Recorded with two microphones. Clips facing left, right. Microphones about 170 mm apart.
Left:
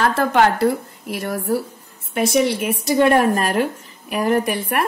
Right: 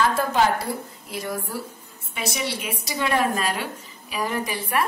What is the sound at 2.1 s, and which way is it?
A woman's voice, 50° left (ahead or behind).